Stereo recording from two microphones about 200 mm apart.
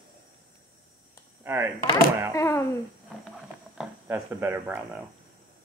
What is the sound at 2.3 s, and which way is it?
Speech, 15° left (ahead or behind).